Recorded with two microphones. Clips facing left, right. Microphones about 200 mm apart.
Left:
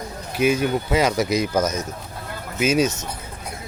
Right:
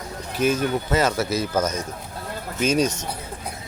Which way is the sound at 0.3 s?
10° left (ahead or behind).